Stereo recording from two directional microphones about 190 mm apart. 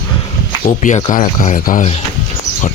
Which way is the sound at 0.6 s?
40° left (ahead or behind).